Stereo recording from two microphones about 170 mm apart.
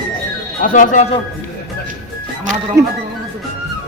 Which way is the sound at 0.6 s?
50° left (ahead or behind).